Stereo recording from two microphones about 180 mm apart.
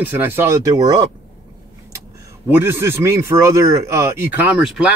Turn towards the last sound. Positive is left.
turn(degrees=-5)  # may be behind; listen again after turning